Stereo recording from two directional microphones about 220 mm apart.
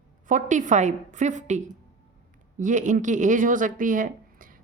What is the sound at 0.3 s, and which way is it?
Speech, 35° right (ahead or behind).